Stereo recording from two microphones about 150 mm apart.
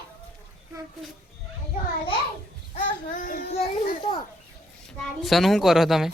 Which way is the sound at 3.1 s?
75° left (ahead or behind).